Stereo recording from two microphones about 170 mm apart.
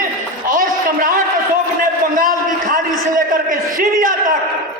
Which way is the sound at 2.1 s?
55° right (ahead or behind).